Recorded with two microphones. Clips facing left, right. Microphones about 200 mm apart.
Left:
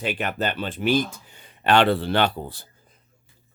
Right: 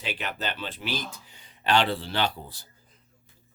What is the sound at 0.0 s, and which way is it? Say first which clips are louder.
Speech: left 7 dB; 50° left (ahead or behind).